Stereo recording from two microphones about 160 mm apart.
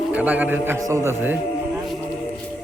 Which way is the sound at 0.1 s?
10° right (ahead or behind).